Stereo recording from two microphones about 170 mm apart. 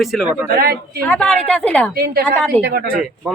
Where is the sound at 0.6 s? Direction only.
60° right (ahead or behind).